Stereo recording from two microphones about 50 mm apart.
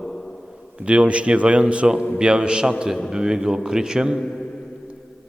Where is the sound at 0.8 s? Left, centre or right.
Right.